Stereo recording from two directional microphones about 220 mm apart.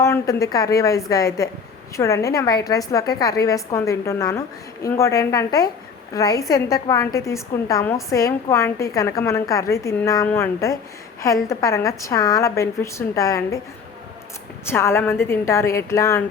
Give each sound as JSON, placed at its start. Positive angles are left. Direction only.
{"t": 0.0, "sound": "a woman's voice", "side_deg": 15}
{"t": 14.6, "sound": "a woman's voice", "side_deg": 10}